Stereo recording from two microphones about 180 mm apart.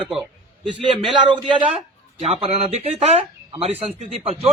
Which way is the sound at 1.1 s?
25° right (ahead or behind).